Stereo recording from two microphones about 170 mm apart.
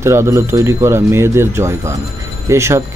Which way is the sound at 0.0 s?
15° right (ahead or behind).